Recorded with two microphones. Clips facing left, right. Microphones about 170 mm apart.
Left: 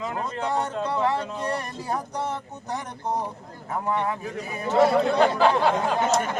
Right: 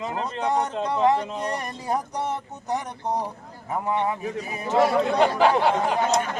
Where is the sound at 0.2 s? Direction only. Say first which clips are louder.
Right 3 dB; 20° right (ahead or behind).